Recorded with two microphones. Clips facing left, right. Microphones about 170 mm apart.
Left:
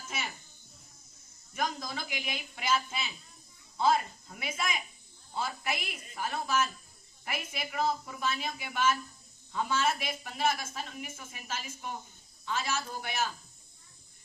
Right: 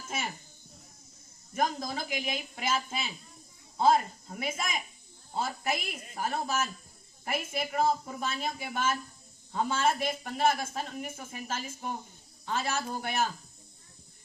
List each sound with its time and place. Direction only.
0.1 s speech: 50° right (ahead or behind)
1.5 s a woman's voice: 45° right (ahead or behind)
12.5 s a woman's voice: 55° right (ahead or behind)